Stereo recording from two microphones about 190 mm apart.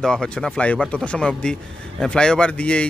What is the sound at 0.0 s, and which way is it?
A man's voice, 5° left (ahead or behind).